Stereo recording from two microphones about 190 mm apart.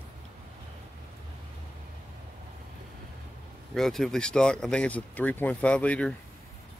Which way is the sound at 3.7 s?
Centre (ahead or behind).